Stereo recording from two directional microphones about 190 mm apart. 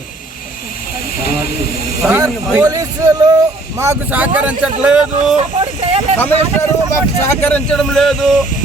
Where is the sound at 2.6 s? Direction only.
20° right (ahead or behind); by 5.3 s 5° right (ahead or behind).